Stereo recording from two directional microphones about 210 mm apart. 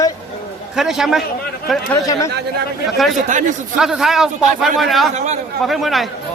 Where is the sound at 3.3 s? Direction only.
35° right (ahead or behind).